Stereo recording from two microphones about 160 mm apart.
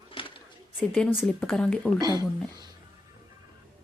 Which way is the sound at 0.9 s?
5° left (ahead or behind).